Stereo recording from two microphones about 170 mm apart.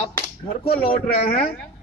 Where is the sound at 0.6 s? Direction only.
35° left (ahead or behind).